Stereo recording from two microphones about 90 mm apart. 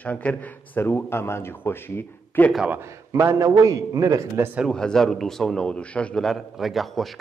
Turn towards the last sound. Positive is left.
turn(degrees=0)  # may be behind; listen again after turning